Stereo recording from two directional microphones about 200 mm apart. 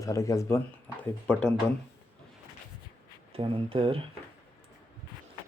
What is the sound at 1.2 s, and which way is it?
Speech, 5° left (ahead or behind).